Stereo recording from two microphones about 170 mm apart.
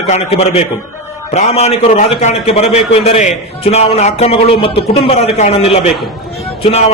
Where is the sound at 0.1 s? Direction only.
40° left (ahead or behind).